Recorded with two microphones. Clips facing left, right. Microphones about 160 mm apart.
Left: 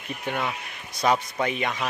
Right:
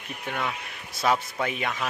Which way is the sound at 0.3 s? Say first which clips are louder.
Left 2 dB; 5° left (ahead or behind).